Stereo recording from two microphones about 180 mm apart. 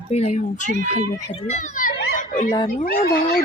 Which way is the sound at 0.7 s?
45° right (ahead or behind).